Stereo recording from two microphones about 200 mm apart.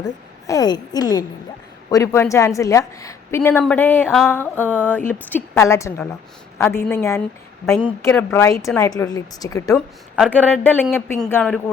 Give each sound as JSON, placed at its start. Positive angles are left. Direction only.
{"t": 0.4, "sound": "a woman's voice", "side_deg": 20}
{"t": 7.8, "sound": "a woman's voice", "side_deg": 25}
{"t": 8.1, "sound": "a woman's voice", "side_deg": 10}
{"t": 9.7, "sound": "a woman's voice", "side_deg": 5}